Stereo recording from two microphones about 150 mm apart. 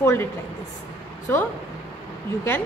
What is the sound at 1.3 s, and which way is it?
Speech, 15° left (ahead or behind).